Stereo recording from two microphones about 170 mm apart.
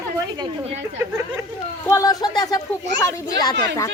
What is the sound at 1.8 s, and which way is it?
Speech, 20° left (ahead or behind).